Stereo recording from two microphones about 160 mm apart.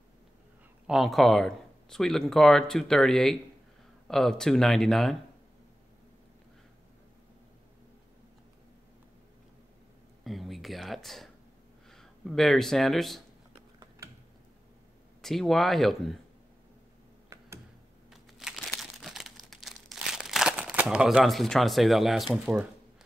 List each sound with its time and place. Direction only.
0.8 s speech: centre (ahead or behind)
10.2 s a sound: centre (ahead or behind)
11.9 s speech: centre (ahead or behind)
13.6 s gears: 20° right (ahead or behind)
15.2 s speech: centre (ahead or behind)
18.1 s crumpling: centre (ahead or behind)